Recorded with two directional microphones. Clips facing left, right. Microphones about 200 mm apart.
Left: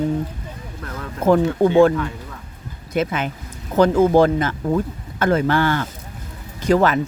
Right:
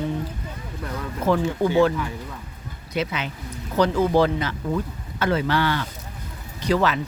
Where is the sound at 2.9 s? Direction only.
50° left (ahead or behind).